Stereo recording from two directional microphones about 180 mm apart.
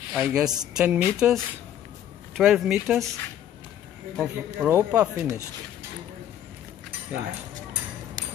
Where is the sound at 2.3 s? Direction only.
Centre (ahead or behind).